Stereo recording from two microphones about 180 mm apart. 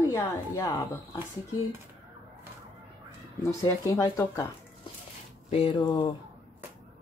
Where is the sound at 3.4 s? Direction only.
15° left (ahead or behind).